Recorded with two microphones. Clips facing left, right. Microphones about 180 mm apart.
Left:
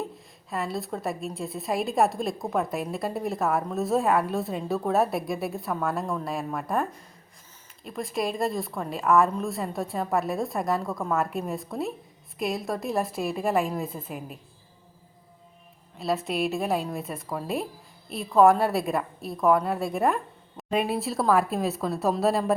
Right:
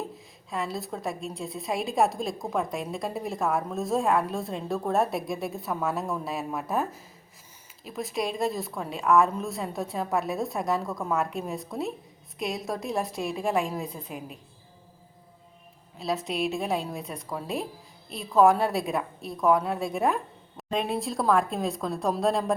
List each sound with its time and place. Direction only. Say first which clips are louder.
0.5 s a woman's voice: left 2 dB; centre (ahead or behind)
16.0 s a woman's voice: left 2 dB; centre (ahead or behind)